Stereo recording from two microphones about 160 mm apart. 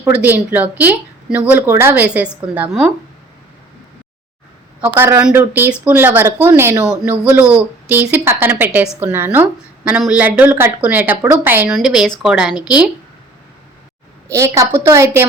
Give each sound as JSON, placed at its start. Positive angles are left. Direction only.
{"t": 0.0, "sound": "speech", "side_deg": -10}
{"t": 4.8, "sound": "a woman's voice", "side_deg": -15}
{"t": 14.3, "sound": "a woman's voice", "side_deg": -20}